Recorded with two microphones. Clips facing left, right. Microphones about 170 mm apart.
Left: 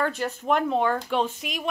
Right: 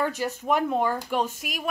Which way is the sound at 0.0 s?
15° right (ahead or behind).